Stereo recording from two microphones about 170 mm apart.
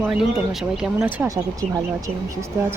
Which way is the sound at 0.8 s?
5° right (ahead or behind).